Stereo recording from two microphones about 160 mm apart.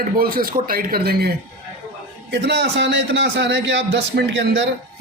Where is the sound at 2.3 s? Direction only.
90° right.